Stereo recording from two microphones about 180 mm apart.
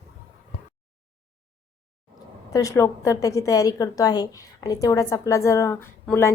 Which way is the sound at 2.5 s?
20° left (ahead or behind).